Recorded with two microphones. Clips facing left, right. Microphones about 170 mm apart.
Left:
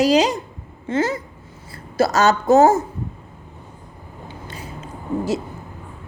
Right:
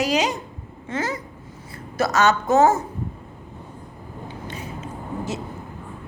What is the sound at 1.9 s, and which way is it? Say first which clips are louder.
Speech: left 3 dB; 35° left (ahead or behind).